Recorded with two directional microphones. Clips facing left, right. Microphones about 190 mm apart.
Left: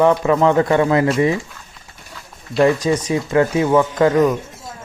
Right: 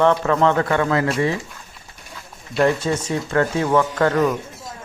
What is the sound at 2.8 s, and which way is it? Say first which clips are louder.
Speech: left 4 dB; 10° left (ahead or behind).